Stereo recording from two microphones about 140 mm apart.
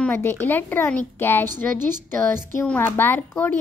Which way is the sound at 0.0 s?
15° left (ahead or behind).